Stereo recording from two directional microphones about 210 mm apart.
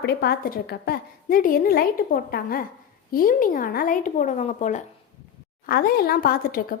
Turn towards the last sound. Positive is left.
turn(degrees=45)  # may be behind; listen again after turning